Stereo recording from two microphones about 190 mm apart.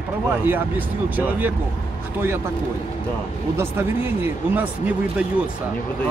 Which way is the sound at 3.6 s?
10° right (ahead or behind).